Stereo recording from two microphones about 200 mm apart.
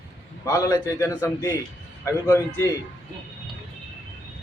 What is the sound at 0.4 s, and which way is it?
A man's voice, 15° left (ahead or behind).